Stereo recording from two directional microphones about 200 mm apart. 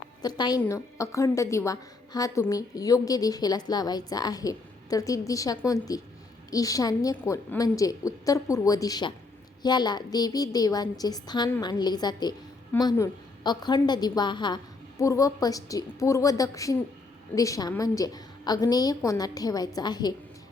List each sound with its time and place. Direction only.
0.2 s a woman's voice: 20° left (ahead or behind)